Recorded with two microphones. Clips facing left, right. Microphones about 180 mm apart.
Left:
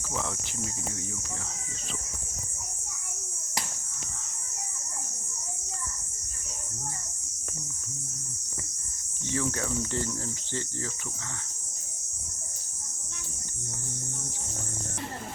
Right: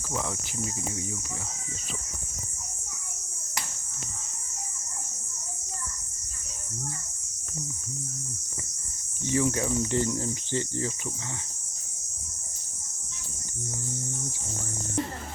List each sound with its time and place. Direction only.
9.2 s cricket: 15° right (ahead or behind)